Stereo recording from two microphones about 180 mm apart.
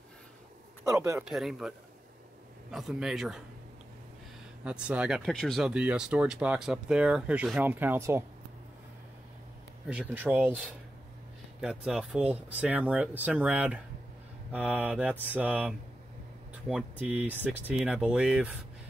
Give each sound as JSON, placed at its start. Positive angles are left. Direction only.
{"t": 0.8, "sound": "speech", "side_deg": -15}
{"t": 1.2, "sound": "speech", "side_deg": 0}
{"t": 4.6, "sound": "speech", "side_deg": -5}
{"t": 9.8, "sound": "speech", "side_deg": -10}